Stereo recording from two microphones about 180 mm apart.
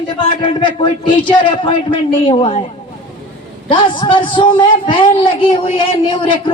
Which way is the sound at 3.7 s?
30° left (ahead or behind).